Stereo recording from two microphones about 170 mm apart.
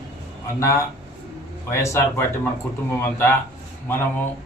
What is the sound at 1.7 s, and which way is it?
A man's voice, 15° left (ahead or behind).